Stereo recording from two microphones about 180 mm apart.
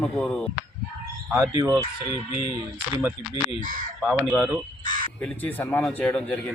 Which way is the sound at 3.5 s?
45° right (ahead or behind).